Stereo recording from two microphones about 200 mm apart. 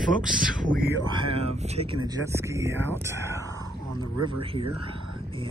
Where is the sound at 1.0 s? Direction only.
25° right (ahead or behind).